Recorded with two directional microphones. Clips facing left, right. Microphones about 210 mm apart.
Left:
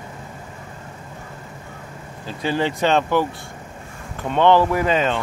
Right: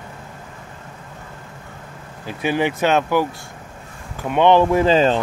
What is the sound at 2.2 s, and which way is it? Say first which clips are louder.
Speech: right 2 dB; 15° right (ahead or behind).